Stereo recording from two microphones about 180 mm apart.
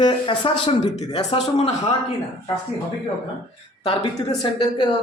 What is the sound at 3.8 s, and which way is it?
Speech, 30° left (ahead or behind).